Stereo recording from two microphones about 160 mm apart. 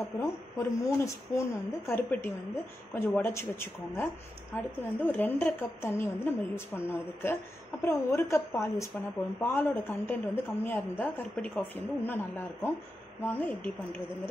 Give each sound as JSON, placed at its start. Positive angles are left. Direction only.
{"t": 0.0, "sound": "speech", "side_deg": 15}
{"t": 7.8, "sound": "speech", "side_deg": 15}